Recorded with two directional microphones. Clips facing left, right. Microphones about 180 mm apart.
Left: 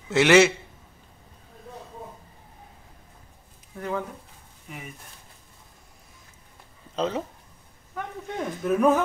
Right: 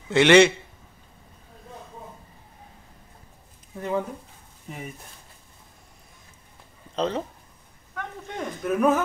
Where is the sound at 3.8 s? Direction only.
20° right (ahead or behind).